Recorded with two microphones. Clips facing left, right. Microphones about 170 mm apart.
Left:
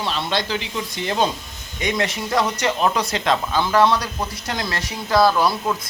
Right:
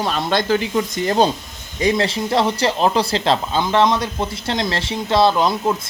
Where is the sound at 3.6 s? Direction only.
20° right (ahead or behind).